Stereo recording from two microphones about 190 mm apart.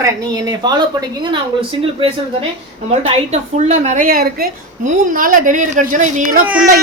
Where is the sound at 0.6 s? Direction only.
25° right (ahead or behind).